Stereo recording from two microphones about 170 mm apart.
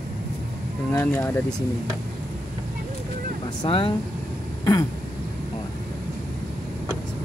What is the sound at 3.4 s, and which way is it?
Speech, 30° left (ahead or behind).